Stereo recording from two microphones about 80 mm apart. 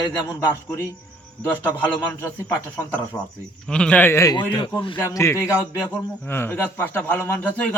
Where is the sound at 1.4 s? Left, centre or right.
Left.